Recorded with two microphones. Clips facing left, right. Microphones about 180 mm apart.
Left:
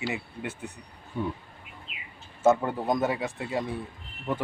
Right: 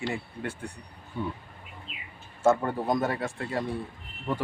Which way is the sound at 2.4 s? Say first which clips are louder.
Left 1 dB; 15° left (ahead or behind).